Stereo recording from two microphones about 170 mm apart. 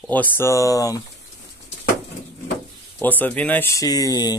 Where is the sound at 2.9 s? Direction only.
10° left (ahead or behind).